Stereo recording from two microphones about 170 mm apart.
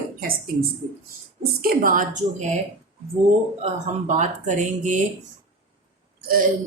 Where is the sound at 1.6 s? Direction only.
55° right (ahead or behind).